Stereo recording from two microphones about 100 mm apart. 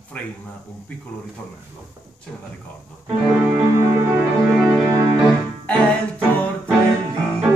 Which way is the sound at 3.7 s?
25° right (ahead or behind).